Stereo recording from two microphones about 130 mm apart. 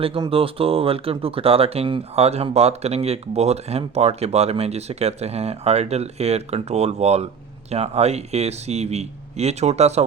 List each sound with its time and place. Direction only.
0.0 s a man's voice: 45° right (ahead or behind)